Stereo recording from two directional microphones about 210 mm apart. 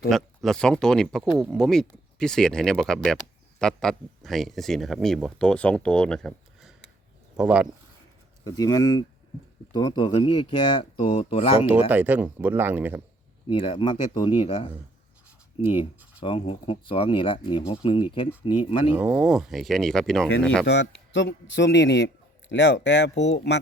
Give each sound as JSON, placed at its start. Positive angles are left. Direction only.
{"t": 0.1, "sound": "speech", "side_deg": 0}
{"t": 8.4, "sound": "speech", "side_deg": 20}
{"t": 11.9, "sound": "speech", "side_deg": -10}
{"t": 13.5, "sound": "speech", "side_deg": 25}
{"t": 18.9, "sound": "speech", "side_deg": -5}
{"t": 20.7, "sound": "speech", "side_deg": 55}